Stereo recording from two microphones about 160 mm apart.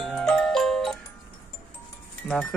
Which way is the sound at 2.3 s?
Centre (ahead or behind).